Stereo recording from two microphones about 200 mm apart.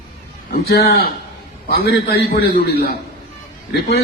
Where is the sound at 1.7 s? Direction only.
50° left (ahead or behind).